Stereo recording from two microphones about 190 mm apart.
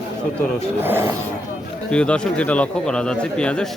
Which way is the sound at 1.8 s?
5° left (ahead or behind).